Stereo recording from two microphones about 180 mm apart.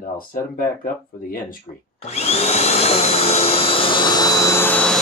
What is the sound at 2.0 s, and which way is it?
Vacuum cleaner, 35° left (ahead or behind).